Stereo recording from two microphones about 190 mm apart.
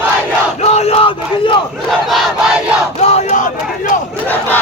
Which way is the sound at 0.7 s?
35° left (ahead or behind).